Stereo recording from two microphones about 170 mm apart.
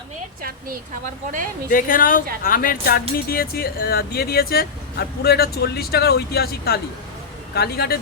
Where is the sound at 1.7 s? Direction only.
55° left (ahead or behind).